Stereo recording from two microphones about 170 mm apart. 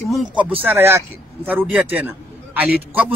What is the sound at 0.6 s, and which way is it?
A man's voice, 15° right (ahead or behind).